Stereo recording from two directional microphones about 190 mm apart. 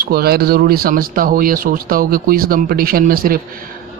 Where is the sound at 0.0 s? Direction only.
55° right (ahead or behind).